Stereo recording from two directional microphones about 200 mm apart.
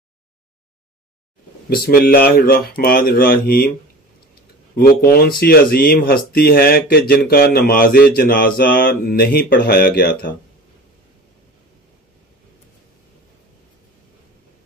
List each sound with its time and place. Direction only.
1.7 s speech: 45° left (ahead or behind)
4.7 s speech: 50° left (ahead or behind)